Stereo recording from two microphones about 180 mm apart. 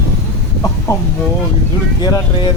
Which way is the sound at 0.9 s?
15° left (ahead or behind).